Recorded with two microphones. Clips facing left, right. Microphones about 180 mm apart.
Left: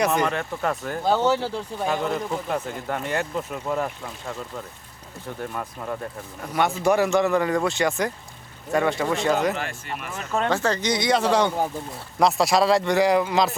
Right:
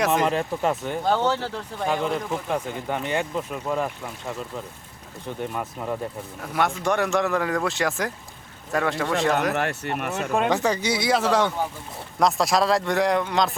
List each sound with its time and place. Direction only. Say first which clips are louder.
0.0 s speech: even; centre (ahead or behind)
0.5 s speech: right 2 dB; 20° right (ahead or behind)
0.8 s speech: right 1 dB; centre (ahead or behind)
1.0 s speech: left 2 dB; 10° left (ahead or behind)
5.5 s speech: right 2 dB; 10° right (ahead or behind)
9.5 s speech: right 3 dB; 65° right (ahead or behind)
10.3 s speech: even; 15° right (ahead or behind); by 13.6 s 5° left (ahead or behind)